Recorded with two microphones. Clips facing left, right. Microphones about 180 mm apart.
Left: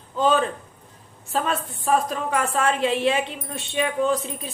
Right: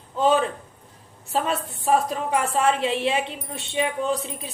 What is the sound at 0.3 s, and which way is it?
A woman's voice, 20° right (ahead or behind).